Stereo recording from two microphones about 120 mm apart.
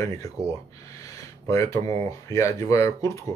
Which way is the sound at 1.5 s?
25° left (ahead or behind).